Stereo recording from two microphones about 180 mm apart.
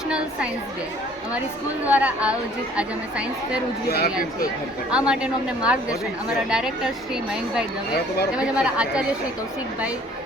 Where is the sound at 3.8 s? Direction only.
60° left (ahead or behind).